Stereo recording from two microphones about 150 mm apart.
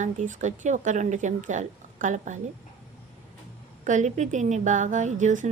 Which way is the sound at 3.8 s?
55° right (ahead or behind).